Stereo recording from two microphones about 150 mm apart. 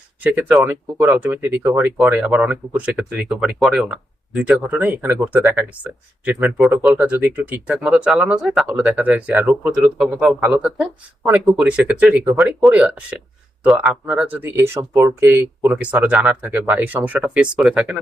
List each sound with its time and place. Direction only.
0.2 s speech: 10° right (ahead or behind)